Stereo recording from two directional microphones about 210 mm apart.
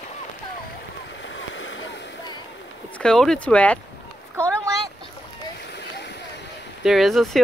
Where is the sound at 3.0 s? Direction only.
5° left (ahead or behind).